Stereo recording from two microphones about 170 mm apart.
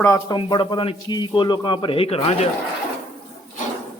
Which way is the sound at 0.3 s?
30° left (ahead or behind).